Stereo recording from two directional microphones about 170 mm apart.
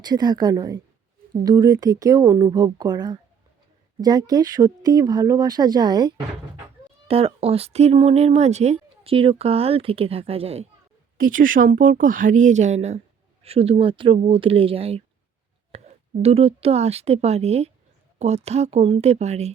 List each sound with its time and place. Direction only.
0.0 s speech: 25° right (ahead or behind)
7.1 s speech: 35° right (ahead or behind)
11.2 s speech: 55° right (ahead or behind)